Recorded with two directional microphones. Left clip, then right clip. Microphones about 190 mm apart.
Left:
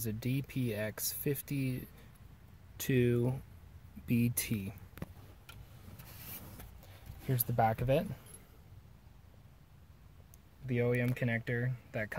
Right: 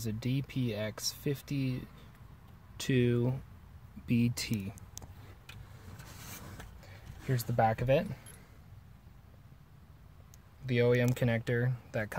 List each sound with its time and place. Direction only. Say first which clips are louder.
0.0 s speech: right 1 dB; 5° left (ahead or behind)
7.2 s speech: right 2 dB; 10° left (ahead or behind)
10.7 s speech: right 5 dB; 15° right (ahead or behind)